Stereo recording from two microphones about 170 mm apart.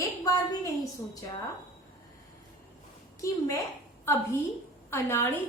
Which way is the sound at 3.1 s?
20° left (ahead or behind).